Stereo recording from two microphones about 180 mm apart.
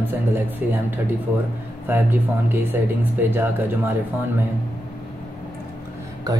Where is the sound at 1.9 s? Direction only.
10° right (ahead or behind).